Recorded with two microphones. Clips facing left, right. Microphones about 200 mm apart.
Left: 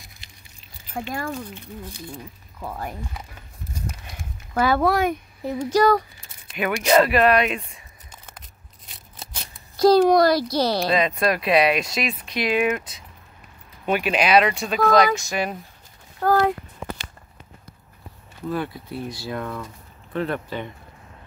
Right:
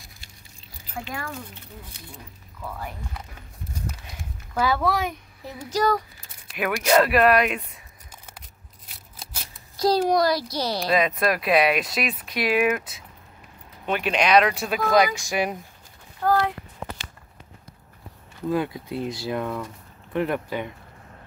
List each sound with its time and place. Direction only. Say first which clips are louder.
0.9 s speech: left 5 dB; 40° left (ahead or behind)
2.6 s speech: left 3 dB; 45° left (ahead or behind)
4.6 s a child's voice: left 4 dB; 55° left (ahead or behind)
6.5 s speech: left 2 dB; centre (ahead or behind)
9.8 s a child's voice: left 6 dB; 60° left (ahead or behind)
10.9 s speech: left 1 dB; centre (ahead or behind)
13.8 s speech: left 2 dB; 10° left (ahead or behind); by 15.5 s 15° right (ahead or behind)
16.2 s a sound: left 3 dB; 45° left (ahead or behind)
18.5 s speech: right 2 dB; 15° right (ahead or behind)